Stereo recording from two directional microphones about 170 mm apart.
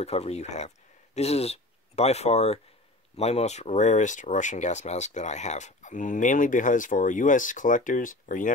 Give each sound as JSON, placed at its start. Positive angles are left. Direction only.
{"t": 0.0, "sound": "speech", "side_deg": 40}